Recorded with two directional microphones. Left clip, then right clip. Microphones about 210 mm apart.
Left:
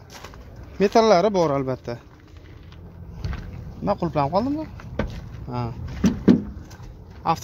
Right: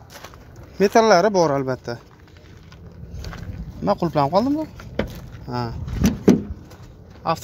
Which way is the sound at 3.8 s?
20° right (ahead or behind).